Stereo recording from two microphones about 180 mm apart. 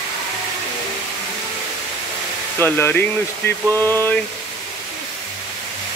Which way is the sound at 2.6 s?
10° left (ahead or behind).